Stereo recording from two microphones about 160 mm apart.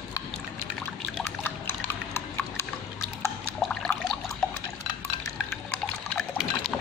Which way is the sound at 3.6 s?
Centre (ahead or behind).